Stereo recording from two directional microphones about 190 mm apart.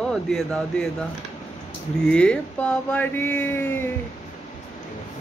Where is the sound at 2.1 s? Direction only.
5° left (ahead or behind).